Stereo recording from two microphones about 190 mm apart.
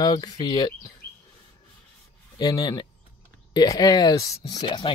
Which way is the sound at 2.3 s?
20° left (ahead or behind).